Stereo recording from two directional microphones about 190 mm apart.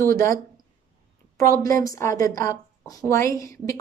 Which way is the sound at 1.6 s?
15° left (ahead or behind).